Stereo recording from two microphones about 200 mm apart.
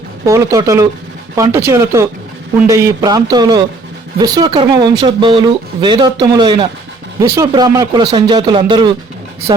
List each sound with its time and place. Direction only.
0.3 s speech: 15° right (ahead or behind)